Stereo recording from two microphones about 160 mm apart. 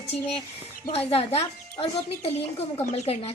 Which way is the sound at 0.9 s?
40° left (ahead or behind).